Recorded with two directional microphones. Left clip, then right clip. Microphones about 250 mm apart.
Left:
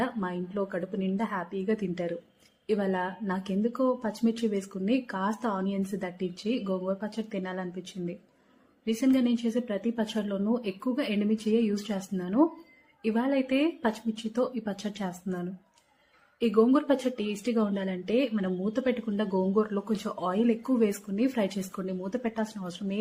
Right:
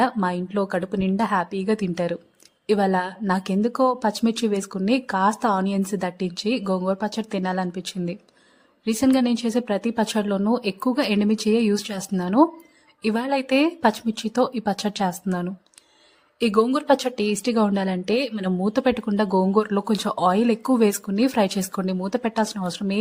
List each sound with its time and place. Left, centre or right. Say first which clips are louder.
0.0 s a woman's voice: right 10 dB; right